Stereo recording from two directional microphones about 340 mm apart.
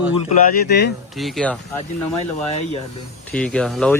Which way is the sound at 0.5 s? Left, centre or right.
Left.